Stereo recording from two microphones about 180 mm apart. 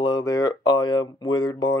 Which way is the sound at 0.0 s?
20° left (ahead or behind).